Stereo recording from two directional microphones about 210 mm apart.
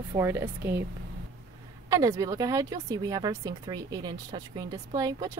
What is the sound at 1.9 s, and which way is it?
Speech, 15° right (ahead or behind).